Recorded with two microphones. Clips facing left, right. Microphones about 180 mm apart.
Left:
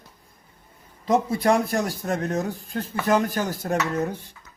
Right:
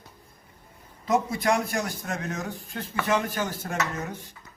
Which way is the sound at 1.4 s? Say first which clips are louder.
Left 4 dB; 35° left (ahead or behind).